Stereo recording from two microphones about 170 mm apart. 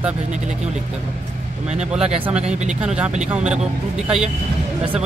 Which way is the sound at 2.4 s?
40° right (ahead or behind).